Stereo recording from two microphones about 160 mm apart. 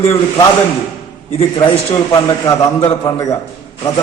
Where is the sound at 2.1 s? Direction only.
20° left (ahead or behind).